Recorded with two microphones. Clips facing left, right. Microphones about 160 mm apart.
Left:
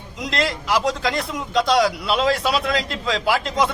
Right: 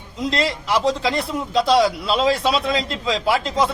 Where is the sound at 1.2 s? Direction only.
30° right (ahead or behind).